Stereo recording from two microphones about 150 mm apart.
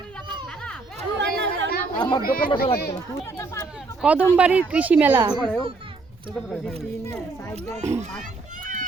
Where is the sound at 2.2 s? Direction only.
75° left (ahead or behind).